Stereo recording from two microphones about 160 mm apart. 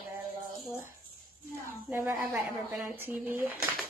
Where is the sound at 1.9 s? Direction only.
15° right (ahead or behind).